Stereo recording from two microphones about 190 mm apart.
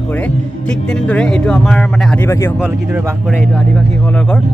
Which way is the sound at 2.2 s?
15° left (ahead or behind).